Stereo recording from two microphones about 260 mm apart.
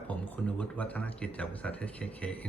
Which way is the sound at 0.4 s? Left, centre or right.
Centre.